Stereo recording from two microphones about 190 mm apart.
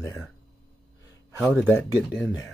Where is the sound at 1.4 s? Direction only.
Centre (ahead or behind).